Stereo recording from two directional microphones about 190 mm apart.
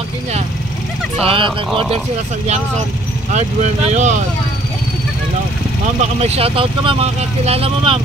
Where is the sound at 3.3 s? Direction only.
40° right (ahead or behind).